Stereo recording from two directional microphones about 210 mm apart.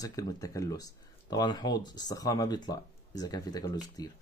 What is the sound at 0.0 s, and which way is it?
Speech, 15° left (ahead or behind).